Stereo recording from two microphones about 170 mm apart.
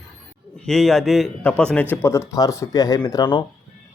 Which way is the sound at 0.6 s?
Centre (ahead or behind).